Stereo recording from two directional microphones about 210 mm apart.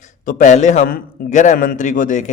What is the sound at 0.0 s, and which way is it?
A man's voice, 35° left (ahead or behind).